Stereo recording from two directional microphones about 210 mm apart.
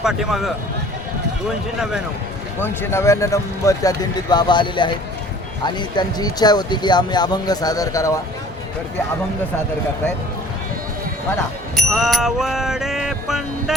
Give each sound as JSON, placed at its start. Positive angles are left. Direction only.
{"t": 0.0, "sound": "music", "side_deg": 0}
{"t": 2.6, "sound": "speech", "side_deg": 10}
{"t": 11.8, "sound": "music", "side_deg": 0}